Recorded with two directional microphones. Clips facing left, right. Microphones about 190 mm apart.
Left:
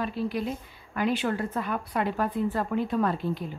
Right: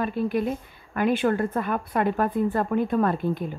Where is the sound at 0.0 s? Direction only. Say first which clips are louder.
Right 4 dB; 50° right (ahead or behind).